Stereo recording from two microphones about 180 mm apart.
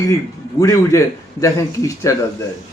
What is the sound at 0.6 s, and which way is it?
A man's voice, 15° left (ahead or behind).